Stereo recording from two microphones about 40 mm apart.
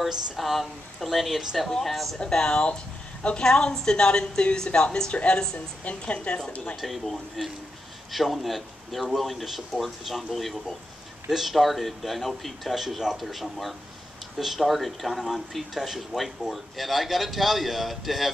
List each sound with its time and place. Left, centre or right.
0.4 s speech: centre
2.1 s a woman's voice: centre
6.8 s speech: centre